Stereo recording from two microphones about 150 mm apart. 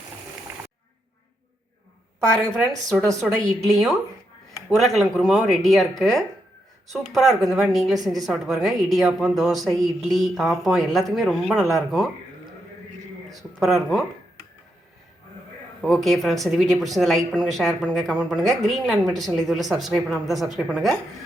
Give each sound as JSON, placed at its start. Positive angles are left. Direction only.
{"t": 0.5, "sound": "a sound", "side_deg": -15}
{"t": 2.4, "sound": "a woman's voice", "side_deg": 0}
{"t": 13.3, "sound": "a woman's voice", "side_deg": 0}
{"t": 15.8, "sound": "a woman's voice", "side_deg": 0}
{"t": 18.3, "sound": "a woman's voice", "side_deg": -20}
{"t": 18.7, "sound": "a woman's voice", "side_deg": -5}